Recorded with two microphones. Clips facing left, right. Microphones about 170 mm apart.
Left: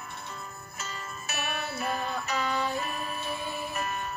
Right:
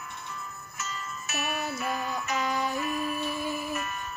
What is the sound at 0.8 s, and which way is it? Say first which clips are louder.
Music: right 2 dB; 30° left (ahead or behind).